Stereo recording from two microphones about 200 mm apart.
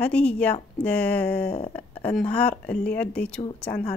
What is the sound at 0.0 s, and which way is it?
Speech, 5° left (ahead or behind).